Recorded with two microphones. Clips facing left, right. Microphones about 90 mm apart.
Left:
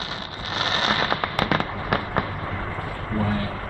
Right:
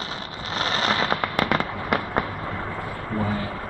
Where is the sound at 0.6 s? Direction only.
35° right (ahead or behind).